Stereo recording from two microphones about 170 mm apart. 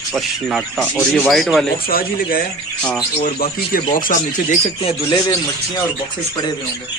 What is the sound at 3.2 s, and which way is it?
Speech, 55° left (ahead or behind).